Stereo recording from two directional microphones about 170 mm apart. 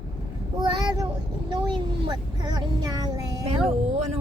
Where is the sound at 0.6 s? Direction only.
25° right (ahead or behind).